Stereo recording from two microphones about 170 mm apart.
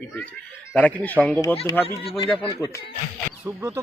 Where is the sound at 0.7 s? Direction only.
10° left (ahead or behind).